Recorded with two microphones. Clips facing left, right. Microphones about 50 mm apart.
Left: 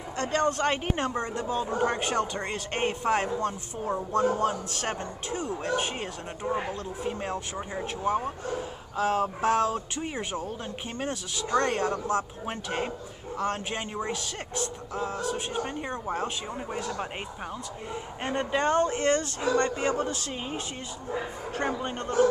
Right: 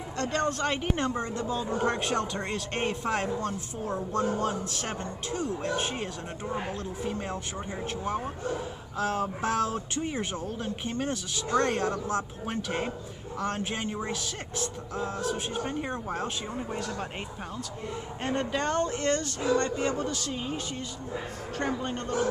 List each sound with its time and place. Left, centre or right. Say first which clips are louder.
0.2 s speech: left 3 dB; left
1.9 s speech: even; centre
2.9 s a man's voice: left 4 dB; left
7.5 s speech: left 1 dB; centre
8.9 s speech: left 3 dB; left
10.0 s speech: even; centre
10.4 s speech: right 2 dB; left
15.0 s speech: left 1 dB; left
16.1 s speech: left 2 dB; centre
18.2 s a man's voice: left 2 dB; centre; by 20.3 s left
21.5 s speech: left 1 dB; centre